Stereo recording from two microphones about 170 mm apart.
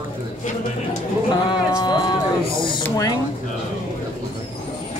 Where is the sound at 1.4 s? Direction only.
25° left (ahead or behind).